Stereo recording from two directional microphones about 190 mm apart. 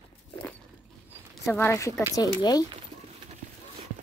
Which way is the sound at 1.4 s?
10° left (ahead or behind).